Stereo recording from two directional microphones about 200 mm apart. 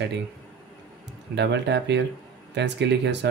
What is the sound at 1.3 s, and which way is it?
Speech, 60° right (ahead or behind).